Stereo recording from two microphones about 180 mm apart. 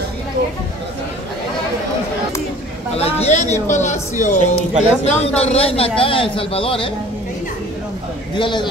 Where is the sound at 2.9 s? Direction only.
35° left (ahead or behind).